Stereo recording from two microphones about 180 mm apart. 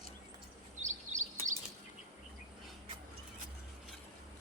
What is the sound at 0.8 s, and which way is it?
Bird vocalization, 40° right (ahead or behind).